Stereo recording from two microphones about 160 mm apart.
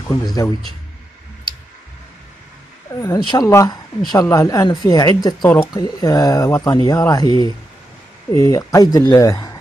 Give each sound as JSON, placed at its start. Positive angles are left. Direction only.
{"t": 0.1, "sound": "a woman's voice", "side_deg": 25}
{"t": 2.9, "sound": "a woman's voice", "side_deg": 20}